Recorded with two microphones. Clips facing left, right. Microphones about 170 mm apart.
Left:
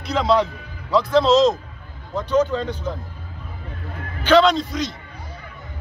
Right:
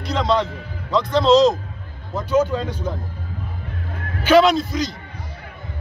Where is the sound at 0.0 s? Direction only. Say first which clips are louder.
Left 1 dB; 5° left (ahead or behind).